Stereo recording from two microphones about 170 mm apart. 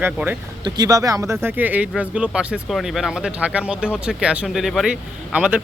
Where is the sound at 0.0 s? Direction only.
10° right (ahead or behind).